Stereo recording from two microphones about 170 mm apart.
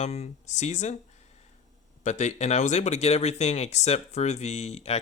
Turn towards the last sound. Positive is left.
turn(degrees=40)  # may be behind; listen again after turning